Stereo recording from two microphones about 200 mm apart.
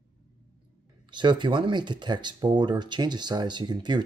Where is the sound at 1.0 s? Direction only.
25° right (ahead or behind).